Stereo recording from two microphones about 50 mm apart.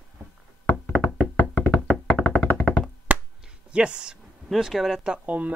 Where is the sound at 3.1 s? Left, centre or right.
Right.